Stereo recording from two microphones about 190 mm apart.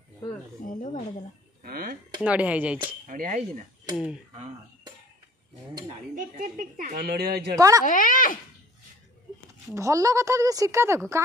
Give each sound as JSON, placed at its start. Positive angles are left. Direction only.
{"t": 0.7, "sound": "speech", "side_deg": 40}
{"t": 1.6, "sound": "chop", "side_deg": -50}
{"t": 2.2, "sound": "a woman's voice", "side_deg": -5}
{"t": 3.1, "sound": "cutlery", "side_deg": -45}
{"t": 6.1, "sound": "a woman's voice", "side_deg": -45}
{"t": 7.5, "sound": "a woman's voice", "side_deg": -15}
{"t": 7.8, "sound": "speech", "side_deg": 45}
{"t": 9.8, "sound": "a woman's voice", "side_deg": -15}